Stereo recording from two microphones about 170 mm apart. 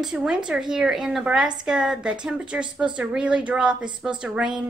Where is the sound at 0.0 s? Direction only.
5° right (ahead or behind).